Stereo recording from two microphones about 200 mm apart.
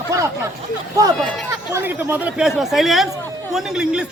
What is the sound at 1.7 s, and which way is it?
Speech, 10° right (ahead or behind).